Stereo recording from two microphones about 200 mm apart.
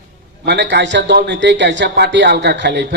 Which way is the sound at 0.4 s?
60° right (ahead or behind).